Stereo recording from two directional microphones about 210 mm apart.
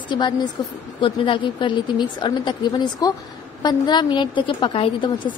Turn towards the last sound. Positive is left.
turn(degrees=25)  # may be behind; listen again after turning